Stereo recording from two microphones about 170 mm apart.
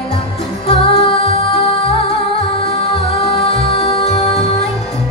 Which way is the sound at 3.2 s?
35° left (ahead or behind).